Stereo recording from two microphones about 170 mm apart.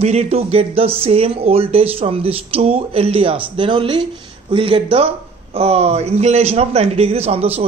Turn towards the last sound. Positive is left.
turn(degrees=-35)  # may be behind; listen again after turning